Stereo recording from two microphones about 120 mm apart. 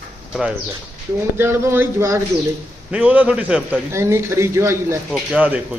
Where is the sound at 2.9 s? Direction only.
10° right (ahead or behind).